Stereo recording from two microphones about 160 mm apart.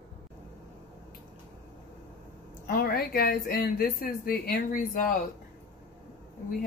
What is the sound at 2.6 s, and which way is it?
A woman's voice, 65° left (ahead or behind).